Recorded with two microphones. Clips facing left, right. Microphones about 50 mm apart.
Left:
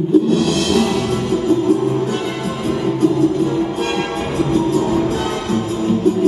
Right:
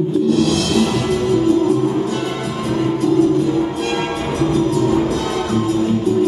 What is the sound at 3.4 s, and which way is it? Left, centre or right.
Music, left.